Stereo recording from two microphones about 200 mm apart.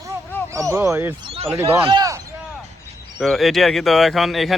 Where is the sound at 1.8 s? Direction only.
20° right (ahead or behind).